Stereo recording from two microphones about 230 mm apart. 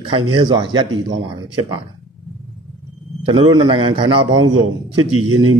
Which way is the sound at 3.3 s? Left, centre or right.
Right.